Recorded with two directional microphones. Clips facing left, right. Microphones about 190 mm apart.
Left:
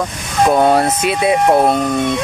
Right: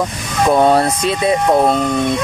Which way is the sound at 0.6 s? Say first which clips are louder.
Even; centre (ahead or behind).